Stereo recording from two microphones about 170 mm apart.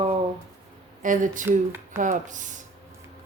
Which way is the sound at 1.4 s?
15° right (ahead or behind).